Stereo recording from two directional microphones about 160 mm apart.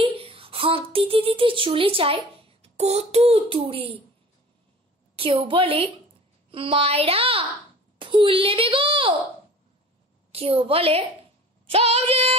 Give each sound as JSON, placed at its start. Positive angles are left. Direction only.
{"t": 0.0, "sound": "a child's voice", "side_deg": -35}
{"t": 5.1, "sound": "a child's voice", "side_deg": -35}
{"t": 10.3, "sound": "a child's voice", "side_deg": -35}